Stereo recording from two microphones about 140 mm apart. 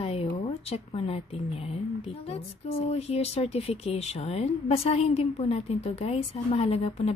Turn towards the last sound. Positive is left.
turn(degrees=45)  # may be behind; listen again after turning